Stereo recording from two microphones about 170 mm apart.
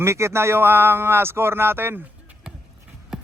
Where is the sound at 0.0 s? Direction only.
15° right (ahead or behind).